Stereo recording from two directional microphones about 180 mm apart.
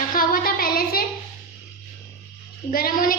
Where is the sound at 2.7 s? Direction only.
50° left (ahead or behind).